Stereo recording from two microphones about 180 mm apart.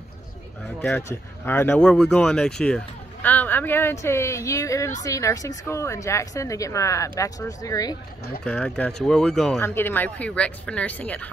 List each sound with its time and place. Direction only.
1.4 s speech: 10° left (ahead or behind)
8.5 s speech: 5° left (ahead or behind)
9.6 s speech: 15° left (ahead or behind)